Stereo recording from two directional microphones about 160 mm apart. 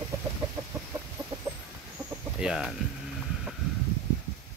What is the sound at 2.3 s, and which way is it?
Speech, 5° right (ahead or behind).